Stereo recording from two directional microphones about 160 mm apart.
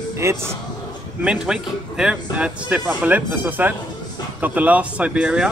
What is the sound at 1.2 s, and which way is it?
Speech, 5° right (ahead or behind).